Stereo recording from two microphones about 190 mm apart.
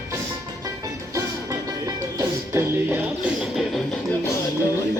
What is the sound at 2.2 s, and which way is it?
Music, 15° right (ahead or behind).